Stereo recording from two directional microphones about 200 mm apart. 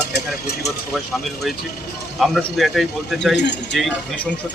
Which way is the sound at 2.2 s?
Centre (ahead or behind).